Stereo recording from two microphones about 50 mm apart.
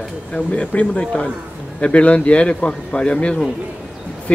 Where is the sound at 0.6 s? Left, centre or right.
Left.